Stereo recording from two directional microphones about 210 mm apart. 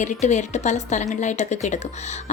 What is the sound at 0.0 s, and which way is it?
Speech, 35° left (ahead or behind).